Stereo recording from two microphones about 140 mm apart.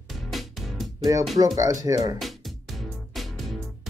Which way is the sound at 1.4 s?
25° right (ahead or behind).